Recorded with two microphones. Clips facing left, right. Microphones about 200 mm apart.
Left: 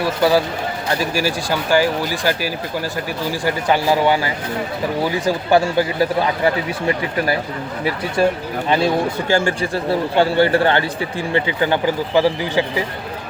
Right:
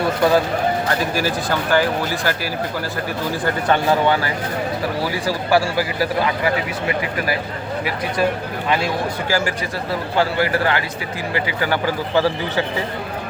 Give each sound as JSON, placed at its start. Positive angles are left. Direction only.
{"t": 0.2, "sound": "speech", "side_deg": 5}
{"t": 5.2, "sound": "a man's voice", "side_deg": 20}
{"t": 9.3, "sound": "a man's voice", "side_deg": 25}